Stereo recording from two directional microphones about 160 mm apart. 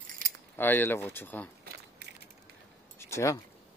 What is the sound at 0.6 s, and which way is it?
Speech, 15° left (ahead or behind).